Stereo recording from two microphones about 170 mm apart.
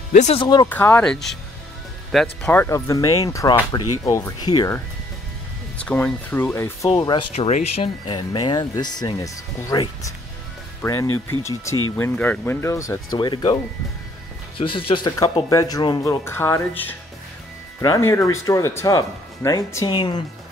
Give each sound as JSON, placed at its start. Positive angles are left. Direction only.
{"t": 0.1, "sound": "speech", "side_deg": 45}
{"t": 0.4, "sound": "speech", "side_deg": 25}
{"t": 0.7, "sound": "speech", "side_deg": 10}
{"t": 2.4, "sound": "speech", "side_deg": 10}
{"t": 5.9, "sound": "speech", "side_deg": 10}
{"t": 6.9, "sound": "speech", "side_deg": 30}
{"t": 7.3, "sound": "speech", "side_deg": 40}
{"t": 14.6, "sound": "speech", "side_deg": 30}